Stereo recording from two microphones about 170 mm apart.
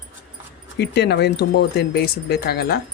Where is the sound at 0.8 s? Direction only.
85° left; by 2.7 s 70° left (ahead or behind).